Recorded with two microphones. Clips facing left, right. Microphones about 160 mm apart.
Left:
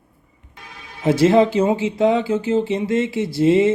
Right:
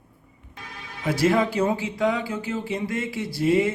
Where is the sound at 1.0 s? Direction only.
25° left (ahead or behind).